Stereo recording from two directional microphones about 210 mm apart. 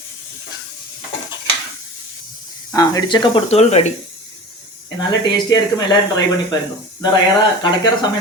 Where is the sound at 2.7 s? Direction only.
15° left (ahead or behind).